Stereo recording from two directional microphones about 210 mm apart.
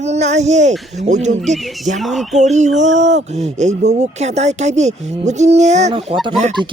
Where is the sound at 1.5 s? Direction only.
Centre (ahead or behind).